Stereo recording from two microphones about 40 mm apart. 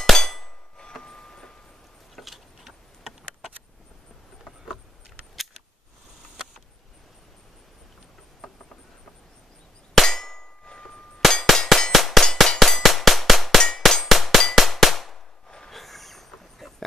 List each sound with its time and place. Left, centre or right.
0.0 s hammer: centre
0.9 s a sound: centre
2.1 s tick-tock: centre
10.0 s clang: centre
10.6 s clang: left
11.1 s clang: centre
11.9 s a sound: centre
12.5 s music: centre
13.6 s a sound: centre
14.5 s clang: centre
15.4 s train: centre
15.7 s a sound: centre